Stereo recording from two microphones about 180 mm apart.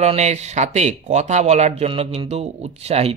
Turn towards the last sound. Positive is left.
turn(degrees=-35)  # may be behind; listen again after turning